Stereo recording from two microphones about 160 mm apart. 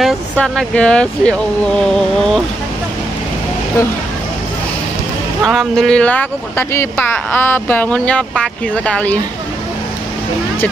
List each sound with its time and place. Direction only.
0.0 s speech: 5° left (ahead or behind)
1.8 s a sound: 5° left (ahead or behind)
5.4 s speech: centre (ahead or behind)